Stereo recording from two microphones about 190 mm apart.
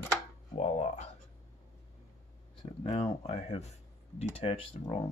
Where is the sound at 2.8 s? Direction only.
30° left (ahead or behind).